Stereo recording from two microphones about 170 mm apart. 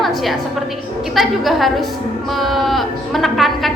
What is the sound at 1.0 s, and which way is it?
A woman's voice, centre (ahead or behind).